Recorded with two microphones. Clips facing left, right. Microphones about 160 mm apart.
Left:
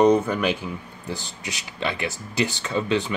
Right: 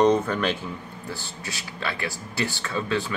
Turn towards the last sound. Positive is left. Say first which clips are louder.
# left 3 dB
turn(degrees=20)  # may be behind; listen again after turning